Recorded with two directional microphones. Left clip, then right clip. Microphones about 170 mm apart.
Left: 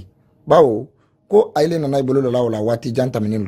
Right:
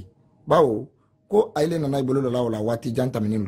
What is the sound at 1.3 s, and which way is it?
A man's voice, 35° left (ahead or behind).